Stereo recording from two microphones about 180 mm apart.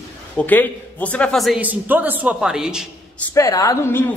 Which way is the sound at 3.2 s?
15° left (ahead or behind).